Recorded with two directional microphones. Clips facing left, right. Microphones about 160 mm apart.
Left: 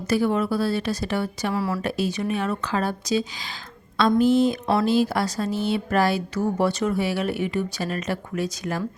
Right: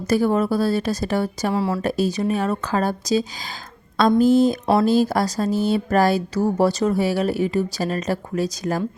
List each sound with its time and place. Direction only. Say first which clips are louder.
0.1 s speech: right 3 dB; 40° right (ahead or behind)
1.5 s speech: right 3 dB; 25° right (ahead or behind)
1.8 s speech: right 4 dB; 40° right (ahead or behind)